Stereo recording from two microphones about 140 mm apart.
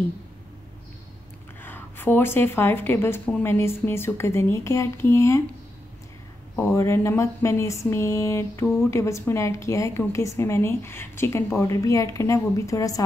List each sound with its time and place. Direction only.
1.6 s a woman's voice: 15° left (ahead or behind)
6.5 s a woman's voice: 20° left (ahead or behind)